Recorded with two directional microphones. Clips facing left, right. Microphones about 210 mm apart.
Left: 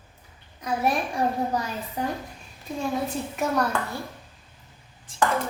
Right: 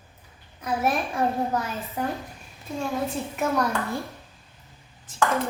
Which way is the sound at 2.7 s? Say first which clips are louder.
Right 1 dB; 15° left (ahead or behind).